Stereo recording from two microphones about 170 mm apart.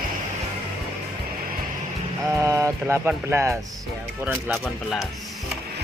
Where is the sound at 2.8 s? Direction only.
10° right (ahead or behind).